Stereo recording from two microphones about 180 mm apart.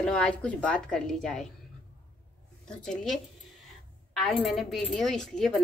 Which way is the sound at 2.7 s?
5° left (ahead or behind).